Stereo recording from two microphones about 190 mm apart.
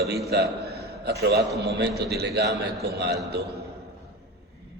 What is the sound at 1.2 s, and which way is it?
A man's voice, 60° right (ahead or behind).